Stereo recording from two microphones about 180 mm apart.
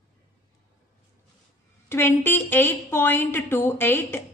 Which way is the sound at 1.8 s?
10° left (ahead or behind).